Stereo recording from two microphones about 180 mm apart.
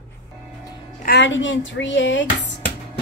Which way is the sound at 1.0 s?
80° left.